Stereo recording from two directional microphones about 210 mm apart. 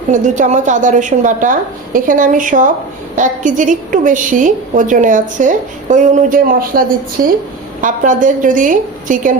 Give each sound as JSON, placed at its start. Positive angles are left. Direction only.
{"t": 0.1, "sound": "a woman's voice", "side_deg": -35}